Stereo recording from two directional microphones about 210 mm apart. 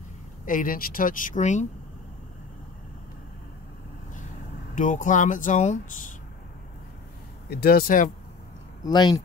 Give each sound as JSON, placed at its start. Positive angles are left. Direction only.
{"t": 0.5, "sound": "speech", "side_deg": 40}
{"t": 4.7, "sound": "speech", "side_deg": 40}
{"t": 7.4, "sound": "speech", "side_deg": 45}
{"t": 8.8, "sound": "speech", "side_deg": 20}